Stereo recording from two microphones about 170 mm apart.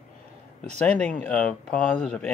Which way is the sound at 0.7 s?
10° left (ahead or behind).